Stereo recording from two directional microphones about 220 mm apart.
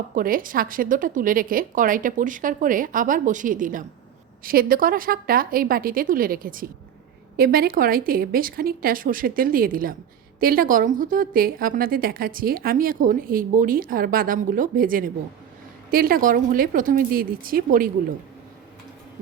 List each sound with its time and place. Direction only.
0.1 s a woman's voice: 40° right (ahead or behind)